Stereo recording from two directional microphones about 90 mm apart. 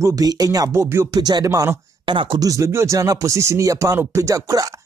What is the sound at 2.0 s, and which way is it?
Speech, 65° right (ahead or behind).